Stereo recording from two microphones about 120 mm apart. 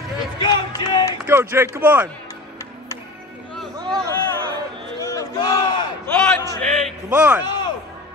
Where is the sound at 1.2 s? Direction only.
20° right (ahead or behind).